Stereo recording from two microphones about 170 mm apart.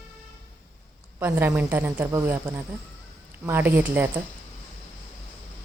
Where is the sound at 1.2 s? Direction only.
15° right (ahead or behind).